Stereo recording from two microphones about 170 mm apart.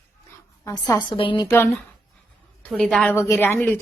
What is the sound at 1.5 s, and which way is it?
Speech, 15° left (ahead or behind).